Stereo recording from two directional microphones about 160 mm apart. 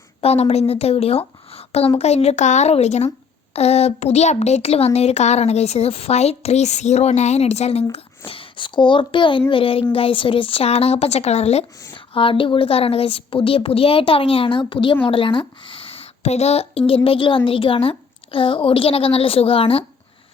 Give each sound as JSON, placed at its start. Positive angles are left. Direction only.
{"t": 0.2, "sound": "a woman's voice", "side_deg": 40}